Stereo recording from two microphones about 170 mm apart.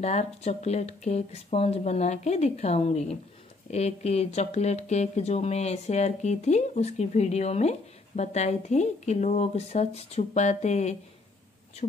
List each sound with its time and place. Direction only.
0.0 s speech: 40° left (ahead or behind)